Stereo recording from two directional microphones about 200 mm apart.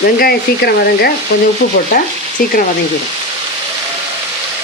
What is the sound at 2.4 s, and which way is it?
Speech, 45° left (ahead or behind).